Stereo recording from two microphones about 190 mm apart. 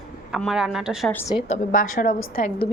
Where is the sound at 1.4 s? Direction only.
35° left (ahead or behind).